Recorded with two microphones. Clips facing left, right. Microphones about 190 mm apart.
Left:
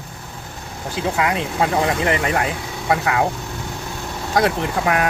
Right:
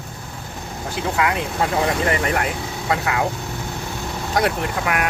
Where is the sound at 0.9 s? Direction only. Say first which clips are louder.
Left 1 dB; 25° left (ahead or behind).